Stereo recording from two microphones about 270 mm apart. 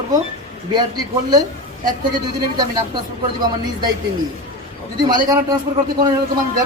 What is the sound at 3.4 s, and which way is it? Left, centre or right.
Speech, centre.